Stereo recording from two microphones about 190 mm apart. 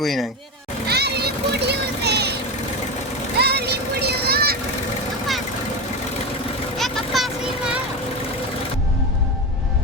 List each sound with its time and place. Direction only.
0.0 s speech: centre (ahead or behind)
0.9 s vehicle: 60° right (ahead or behind)
3.3 s a sound: 60° right (ahead or behind)
6.7 s vehicle: centre (ahead or behind)